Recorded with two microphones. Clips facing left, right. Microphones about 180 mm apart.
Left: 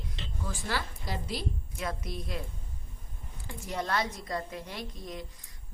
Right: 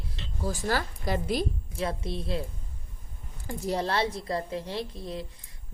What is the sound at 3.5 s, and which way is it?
A woman's voice, 35° right (ahead or behind).